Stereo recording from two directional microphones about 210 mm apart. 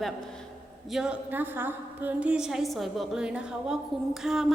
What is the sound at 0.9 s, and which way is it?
A woman's voice, 5° right (ahead or behind).